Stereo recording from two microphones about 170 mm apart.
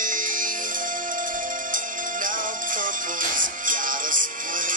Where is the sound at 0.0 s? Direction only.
50° right (ahead or behind).